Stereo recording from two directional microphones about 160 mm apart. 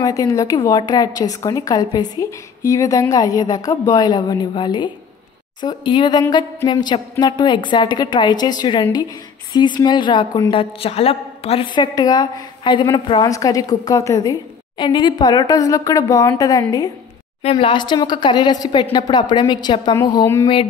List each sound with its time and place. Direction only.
0.0 s a woman's voice: 20° left (ahead or behind)
17.4 s a woman's voice: 40° left (ahead or behind); by 20.4 s 20° left (ahead or behind)